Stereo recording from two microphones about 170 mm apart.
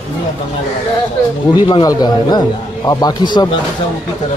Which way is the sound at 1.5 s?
25° left (ahead or behind).